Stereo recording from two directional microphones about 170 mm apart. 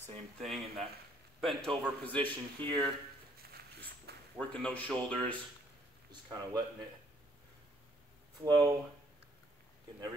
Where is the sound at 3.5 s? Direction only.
65° right (ahead or behind).